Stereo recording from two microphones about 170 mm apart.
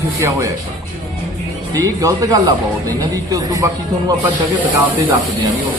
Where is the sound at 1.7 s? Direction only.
20° right (ahead or behind).